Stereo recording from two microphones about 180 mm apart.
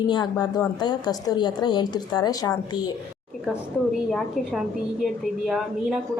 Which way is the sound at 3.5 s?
Centre (ahead or behind).